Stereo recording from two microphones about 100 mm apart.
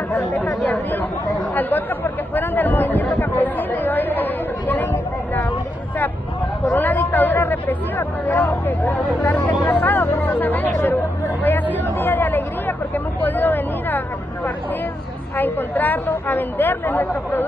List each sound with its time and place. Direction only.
0.3 s speech: 15° left (ahead or behind)
1.5 s chatter: 20° left (ahead or behind)
6.6 s a sound: 20° left (ahead or behind)
8.3 s speech: 20° left (ahead or behind)
9.7 s chatter: 20° left (ahead or behind)
15.3 s a woman's voice: 20° left (ahead or behind)